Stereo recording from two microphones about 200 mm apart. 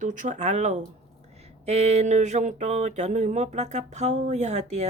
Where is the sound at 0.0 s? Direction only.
40° right (ahead or behind).